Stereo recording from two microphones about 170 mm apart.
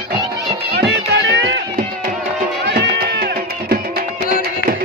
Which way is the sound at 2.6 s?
85° right.